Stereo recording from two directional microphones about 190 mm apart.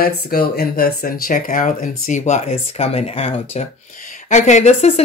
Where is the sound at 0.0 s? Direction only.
55° left (ahead or behind).